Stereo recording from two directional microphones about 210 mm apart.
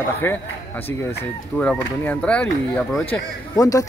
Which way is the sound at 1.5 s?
5° left (ahead or behind).